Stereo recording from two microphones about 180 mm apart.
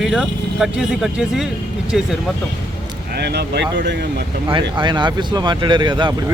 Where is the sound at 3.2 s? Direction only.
65° right (ahead or behind).